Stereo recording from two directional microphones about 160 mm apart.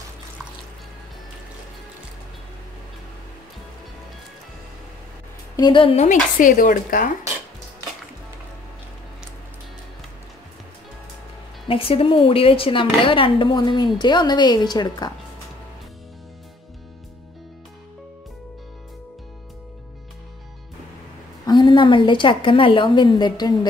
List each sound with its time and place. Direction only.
5.6 s speech: 30° left (ahead or behind)
6.0 s a woman's voice: 55° left (ahead or behind)
11.6 s speech: 35° left (ahead or behind)
21.5 s a woman's voice: 30° left (ahead or behind)